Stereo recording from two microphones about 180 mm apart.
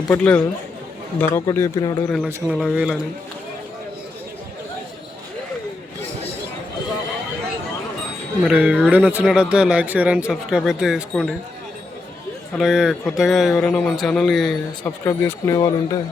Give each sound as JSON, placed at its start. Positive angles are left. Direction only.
{"t": 0.1, "sound": "speech", "side_deg": 10}
{"t": 2.0, "sound": "speech", "side_deg": 5}
{"t": 8.4, "sound": "speech", "side_deg": -5}
{"t": 12.5, "sound": "speech", "side_deg": 0}
{"t": 14.8, "sound": "speech", "side_deg": 10}